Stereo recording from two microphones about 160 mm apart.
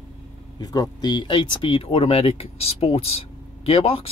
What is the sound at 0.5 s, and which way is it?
Speech, 25° left (ahead or behind).